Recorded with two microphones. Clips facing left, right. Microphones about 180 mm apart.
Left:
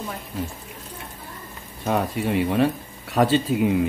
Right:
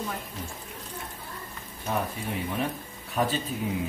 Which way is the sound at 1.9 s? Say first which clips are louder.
Left 8 dB; 80° left.